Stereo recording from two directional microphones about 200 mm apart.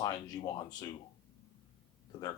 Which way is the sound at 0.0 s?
20° left (ahead or behind).